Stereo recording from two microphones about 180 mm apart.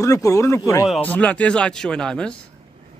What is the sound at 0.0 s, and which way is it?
Speech, 15° left (ahead or behind).